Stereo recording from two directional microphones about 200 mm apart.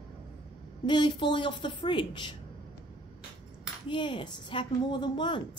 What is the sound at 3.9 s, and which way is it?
A woman's voice, 25° left (ahead or behind).